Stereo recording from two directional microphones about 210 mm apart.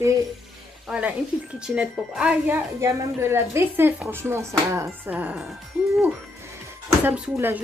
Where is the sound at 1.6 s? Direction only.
5° right (ahead or behind).